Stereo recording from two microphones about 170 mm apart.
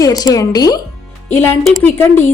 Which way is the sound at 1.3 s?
10° left (ahead or behind).